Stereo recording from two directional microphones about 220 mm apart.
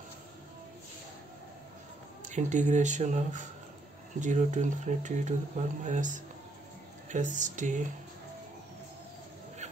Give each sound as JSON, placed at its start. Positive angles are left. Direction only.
{"t": 2.2, "sound": "speech", "side_deg": -35}